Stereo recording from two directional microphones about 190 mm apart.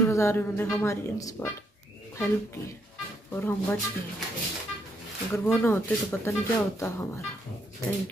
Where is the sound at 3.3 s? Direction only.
10° left (ahead or behind).